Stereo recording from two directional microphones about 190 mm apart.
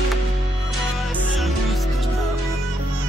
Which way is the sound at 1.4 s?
Centre (ahead or behind).